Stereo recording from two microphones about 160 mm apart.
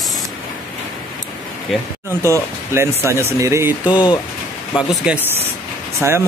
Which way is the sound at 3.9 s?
30° left (ahead or behind).